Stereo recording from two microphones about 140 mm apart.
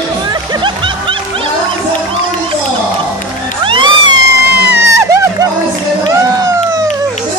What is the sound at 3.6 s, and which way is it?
Cat, 40° right (ahead or behind).